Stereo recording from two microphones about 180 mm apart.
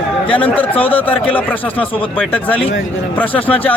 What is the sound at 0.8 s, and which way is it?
Speech, 30° left (ahead or behind).